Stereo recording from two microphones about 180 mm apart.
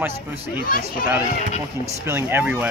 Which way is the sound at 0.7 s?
55° left (ahead or behind).